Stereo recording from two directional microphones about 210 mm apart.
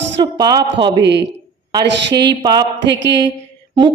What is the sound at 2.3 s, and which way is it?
Speech, 20° right (ahead or behind).